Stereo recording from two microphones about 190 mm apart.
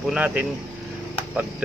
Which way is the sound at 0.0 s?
5° right (ahead or behind).